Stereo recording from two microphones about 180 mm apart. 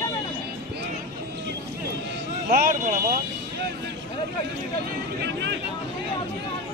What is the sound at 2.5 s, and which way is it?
Speech, 50° right (ahead or behind).